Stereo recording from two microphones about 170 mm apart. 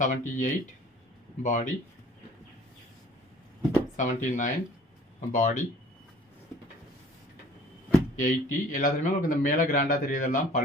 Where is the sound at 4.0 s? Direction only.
50° left (ahead or behind).